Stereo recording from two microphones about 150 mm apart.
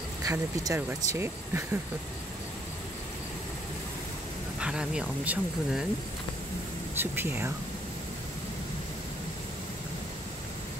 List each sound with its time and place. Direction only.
0.2 s speech: 20° right (ahead or behind)
4.6 s speech: 5° right (ahead or behind)
7.0 s speech: 15° right (ahead or behind)